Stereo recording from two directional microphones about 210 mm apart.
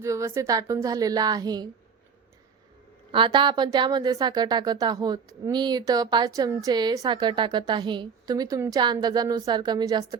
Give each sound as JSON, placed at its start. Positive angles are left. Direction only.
{"t": 0.0, "sound": "a woman's voice", "side_deg": -15}
{"t": 3.1, "sound": "speech", "side_deg": -25}